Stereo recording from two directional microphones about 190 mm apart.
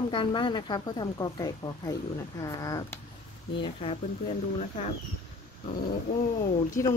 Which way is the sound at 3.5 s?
30° left (ahead or behind).